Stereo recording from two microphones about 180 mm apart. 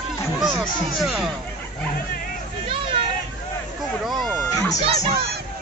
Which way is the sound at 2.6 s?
30° right (ahead or behind).